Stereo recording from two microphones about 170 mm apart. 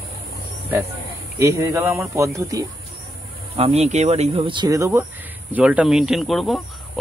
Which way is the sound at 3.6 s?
40° right (ahead or behind).